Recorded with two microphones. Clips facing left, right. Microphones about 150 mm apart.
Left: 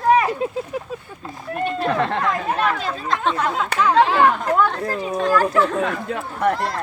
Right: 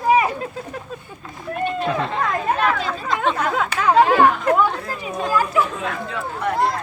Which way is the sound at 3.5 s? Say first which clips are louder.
Right 1 dB; 55° right (ahead or behind).